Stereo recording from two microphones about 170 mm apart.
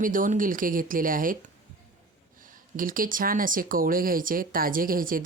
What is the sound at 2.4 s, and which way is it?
Speech, 55° right (ahead or behind).